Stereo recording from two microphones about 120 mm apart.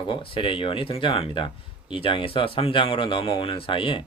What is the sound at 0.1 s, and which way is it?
Speech, 50° left (ahead or behind).